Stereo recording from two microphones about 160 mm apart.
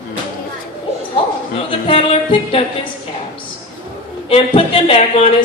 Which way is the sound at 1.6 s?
35° left (ahead or behind).